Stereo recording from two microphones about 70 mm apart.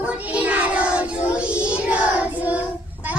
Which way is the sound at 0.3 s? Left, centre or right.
Right.